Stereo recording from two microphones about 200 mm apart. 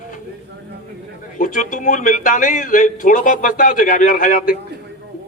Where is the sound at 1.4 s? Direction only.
40° left (ahead or behind).